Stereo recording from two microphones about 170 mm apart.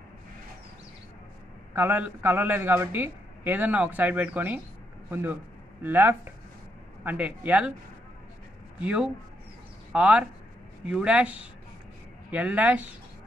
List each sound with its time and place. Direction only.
1.7 s a man's voice: 15° right (ahead or behind)
8.7 s a man's voice: 5° right (ahead or behind)